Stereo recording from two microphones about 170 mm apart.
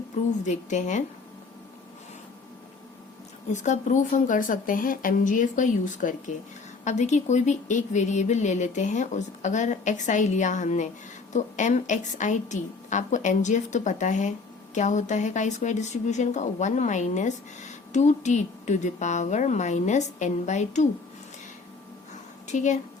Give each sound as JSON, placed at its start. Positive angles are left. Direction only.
{"t": 0.3, "sound": "a woman's voice", "side_deg": 45}
{"t": 3.5, "sound": "a woman's voice", "side_deg": 45}
{"t": 22.4, "sound": "speech", "side_deg": 45}